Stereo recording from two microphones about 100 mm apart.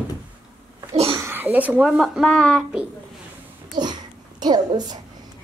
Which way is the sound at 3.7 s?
45° right (ahead or behind).